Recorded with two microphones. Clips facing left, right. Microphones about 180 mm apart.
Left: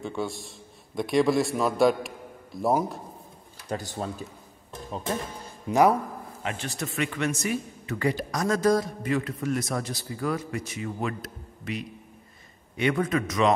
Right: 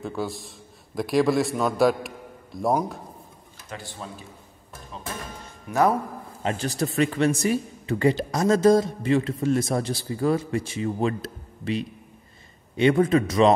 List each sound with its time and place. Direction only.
0.0 s a man's voice: centre (ahead or behind)
3.7 s speech: 40° left (ahead or behind)
5.7 s speech: 25° left (ahead or behind)
6.4 s speech: 35° right (ahead or behind)